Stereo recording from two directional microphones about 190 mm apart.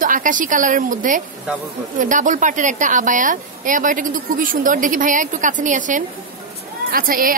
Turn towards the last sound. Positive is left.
turn(degrees=-50)  # may be behind; listen again after turning